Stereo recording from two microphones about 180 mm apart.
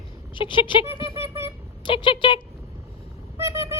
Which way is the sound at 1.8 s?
25° left (ahead or behind).